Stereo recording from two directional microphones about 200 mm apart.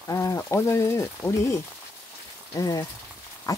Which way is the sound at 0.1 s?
15° left (ahead or behind).